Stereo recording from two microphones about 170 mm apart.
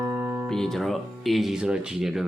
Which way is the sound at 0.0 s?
20° right (ahead or behind).